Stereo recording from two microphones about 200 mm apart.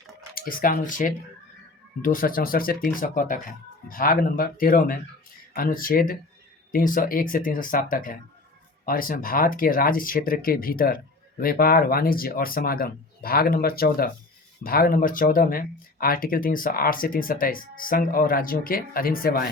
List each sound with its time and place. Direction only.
0.3 s speech: 45° left (ahead or behind)